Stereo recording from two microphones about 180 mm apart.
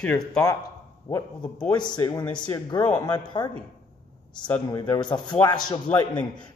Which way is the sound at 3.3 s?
20° left (ahead or behind).